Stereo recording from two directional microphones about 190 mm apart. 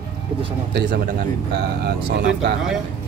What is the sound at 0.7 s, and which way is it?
Speech, 60° right (ahead or behind).